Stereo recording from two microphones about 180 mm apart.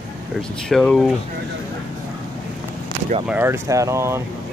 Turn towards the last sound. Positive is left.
turn(degrees=-15)  # may be behind; listen again after turning